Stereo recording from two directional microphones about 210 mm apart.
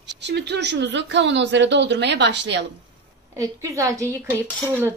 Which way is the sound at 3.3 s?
15° right (ahead or behind).